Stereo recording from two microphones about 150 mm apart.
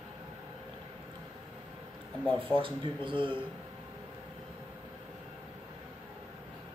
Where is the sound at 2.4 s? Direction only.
35° right (ahead or behind).